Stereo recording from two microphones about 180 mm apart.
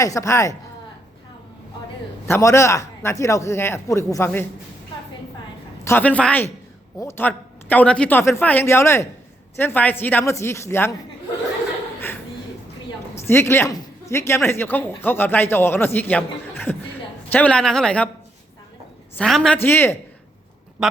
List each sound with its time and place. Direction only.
0.0 s speech: 15° left (ahead or behind)
2.2 s speech: 15° left (ahead or behind)
5.8 s speech: 10° left (ahead or behind)
13.1 s speech: 15° left (ahead or behind)
19.1 s a woman's voice: 5° left (ahead or behind)